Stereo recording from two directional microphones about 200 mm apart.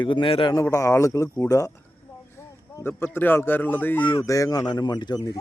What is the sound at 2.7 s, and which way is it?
Speech, 10° left (ahead or behind).